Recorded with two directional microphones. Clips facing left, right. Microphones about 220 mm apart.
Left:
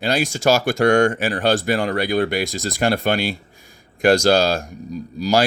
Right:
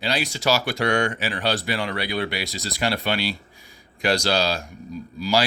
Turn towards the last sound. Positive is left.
turn(degrees=45)  # may be behind; listen again after turning